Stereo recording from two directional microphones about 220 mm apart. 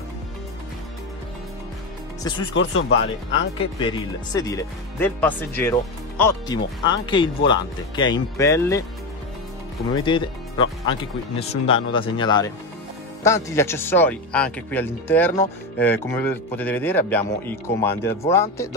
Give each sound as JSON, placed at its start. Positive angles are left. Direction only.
{"t": 2.5, "sound": "speech", "side_deg": 55}
{"t": 3.5, "sound": "speech", "side_deg": 20}
{"t": 9.9, "sound": "speech", "side_deg": 20}